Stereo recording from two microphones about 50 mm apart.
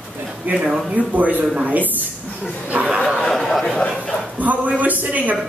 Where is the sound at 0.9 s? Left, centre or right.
Right.